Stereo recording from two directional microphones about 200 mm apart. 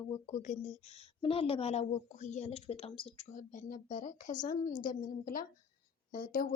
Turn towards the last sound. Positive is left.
turn(degrees=45)  # may be behind; listen again after turning